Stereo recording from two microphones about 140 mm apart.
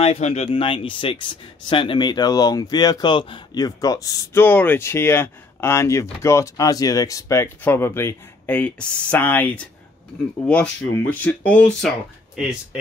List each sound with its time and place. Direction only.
0.0 s speech: 45° left (ahead or behind); by 11.9 s 10° left (ahead or behind)